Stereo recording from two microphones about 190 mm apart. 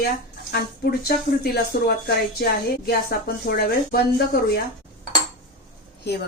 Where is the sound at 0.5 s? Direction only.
55° left (ahead or behind).